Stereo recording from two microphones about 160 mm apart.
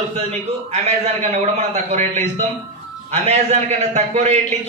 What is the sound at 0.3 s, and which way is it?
A man's voice, 45° right (ahead or behind).